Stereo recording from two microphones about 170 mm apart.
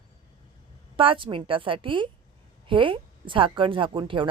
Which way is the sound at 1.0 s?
30° right (ahead or behind).